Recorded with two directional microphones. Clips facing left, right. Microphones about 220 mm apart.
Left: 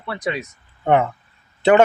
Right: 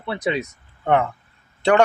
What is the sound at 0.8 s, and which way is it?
Speech, 5° left (ahead or behind).